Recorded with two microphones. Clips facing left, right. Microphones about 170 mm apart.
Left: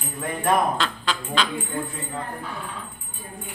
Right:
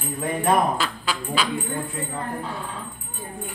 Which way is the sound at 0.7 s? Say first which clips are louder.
Even; 5° right (ahead or behind).